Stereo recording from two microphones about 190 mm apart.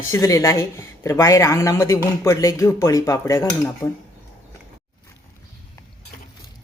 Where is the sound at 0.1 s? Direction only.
15° left (ahead or behind).